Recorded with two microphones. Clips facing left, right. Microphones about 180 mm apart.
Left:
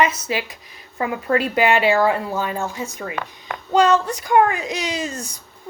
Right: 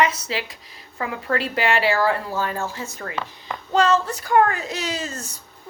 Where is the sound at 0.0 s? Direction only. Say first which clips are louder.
Left 2 dB; 20° left (ahead or behind).